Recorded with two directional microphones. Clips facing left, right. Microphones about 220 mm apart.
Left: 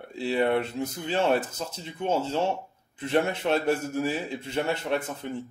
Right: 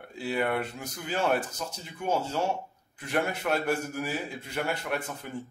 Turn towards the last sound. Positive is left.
turn(degrees=25)  # may be behind; listen again after turning